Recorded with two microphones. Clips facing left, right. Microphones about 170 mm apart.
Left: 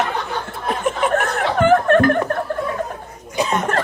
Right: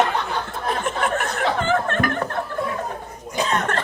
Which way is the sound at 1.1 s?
55° left (ahead or behind).